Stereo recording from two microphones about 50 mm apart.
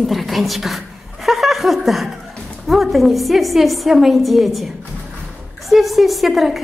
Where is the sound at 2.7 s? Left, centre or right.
Centre.